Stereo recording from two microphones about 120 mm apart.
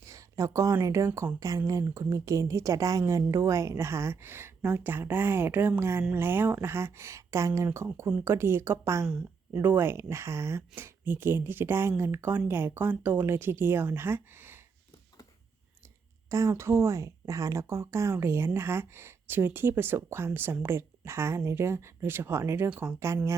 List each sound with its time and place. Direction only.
0.0 s a sound: 25° right (ahead or behind)
0.8 s speech: 25° right (ahead or behind)
9.0 s speech: 5° right (ahead or behind)
9.6 s speech: 20° right (ahead or behind)
16.3 s speech: 25° right (ahead or behind)
22.7 s speech: 10° right (ahead or behind)
23.0 s speech: 25° right (ahead or behind)